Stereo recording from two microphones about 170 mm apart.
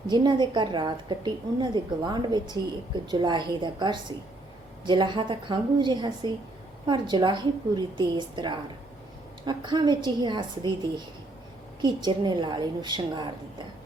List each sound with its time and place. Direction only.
0.1 s a woman's voice: 25° right (ahead or behind)